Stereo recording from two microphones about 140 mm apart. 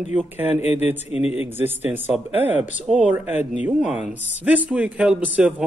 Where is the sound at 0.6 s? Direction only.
45° left (ahead or behind).